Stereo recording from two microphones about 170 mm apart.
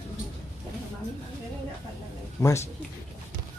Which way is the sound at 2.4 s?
20° left (ahead or behind).